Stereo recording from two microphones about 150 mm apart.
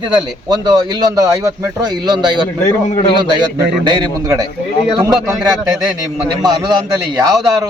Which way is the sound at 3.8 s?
25° right (ahead or behind).